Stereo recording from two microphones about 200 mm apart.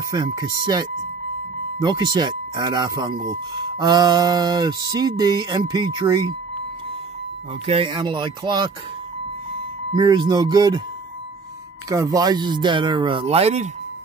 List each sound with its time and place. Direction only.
0.1 s speech: 20° right (ahead or behind)
7.6 s speech: 25° right (ahead or behind)
9.9 s speech: 20° right (ahead or behind)
11.9 s speech: 15° right (ahead or behind)